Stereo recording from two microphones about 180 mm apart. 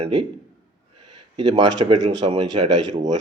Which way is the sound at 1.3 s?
25° right (ahead or behind).